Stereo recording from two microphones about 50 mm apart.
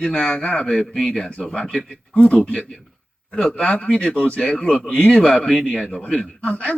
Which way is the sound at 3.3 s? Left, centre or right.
Centre.